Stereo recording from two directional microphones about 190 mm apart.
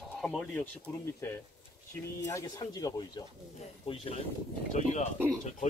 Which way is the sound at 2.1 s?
20° left (ahead or behind).